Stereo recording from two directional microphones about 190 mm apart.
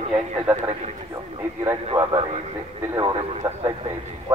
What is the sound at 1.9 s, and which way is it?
Speech, 10° right (ahead or behind).